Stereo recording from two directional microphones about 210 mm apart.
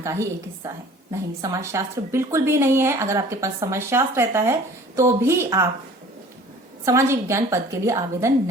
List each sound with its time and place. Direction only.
0.0 s a woman's voice: 15° right (ahead or behind)
6.8 s a woman's voice: 15° right (ahead or behind)